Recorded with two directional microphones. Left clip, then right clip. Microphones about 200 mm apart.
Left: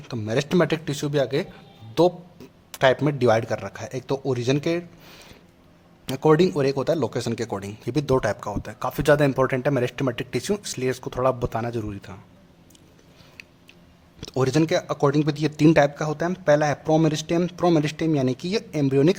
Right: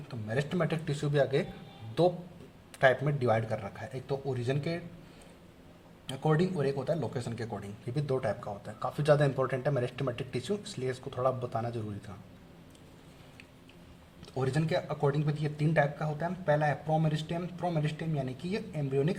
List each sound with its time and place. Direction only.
0.1 s speech: 40° left (ahead or behind)
0.9 s speech: 25° left (ahead or behind)
2.7 s speech: 30° left (ahead or behind)
6.1 s speech: 40° left (ahead or behind)
14.2 s speech: 40° left (ahead or behind)